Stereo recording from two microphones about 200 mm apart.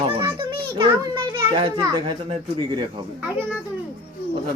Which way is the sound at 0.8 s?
20° right (ahead or behind).